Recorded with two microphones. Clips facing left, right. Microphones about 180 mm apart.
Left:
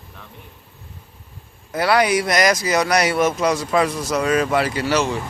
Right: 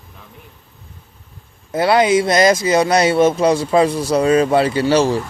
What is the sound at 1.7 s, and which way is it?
Speech, 25° right (ahead or behind).